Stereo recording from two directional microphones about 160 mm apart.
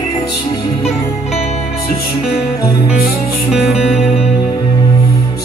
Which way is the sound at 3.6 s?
40° left (ahead or behind).